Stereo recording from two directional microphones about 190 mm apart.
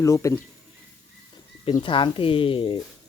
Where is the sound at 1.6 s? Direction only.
25° left (ahead or behind).